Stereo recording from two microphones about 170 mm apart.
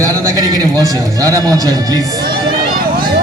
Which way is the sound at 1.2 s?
20° right (ahead or behind).